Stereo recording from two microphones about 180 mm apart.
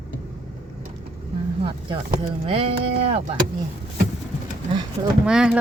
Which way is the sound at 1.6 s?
30° right (ahead or behind).